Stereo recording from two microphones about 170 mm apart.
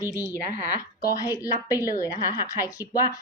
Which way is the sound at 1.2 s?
20° left (ahead or behind).